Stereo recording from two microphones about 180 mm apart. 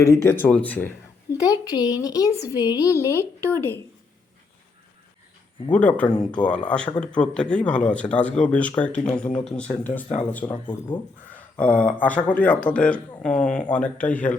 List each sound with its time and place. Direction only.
0.0 s a child's voice: 15° left (ahead or behind)
5.7 s speech: 10° left (ahead or behind)
6.1 s speech: 25° left (ahead or behind)
6.5 s speech: 5° left (ahead or behind)
10.5 s speech: 25° left (ahead or behind)
11.6 s speech: 5° left (ahead or behind)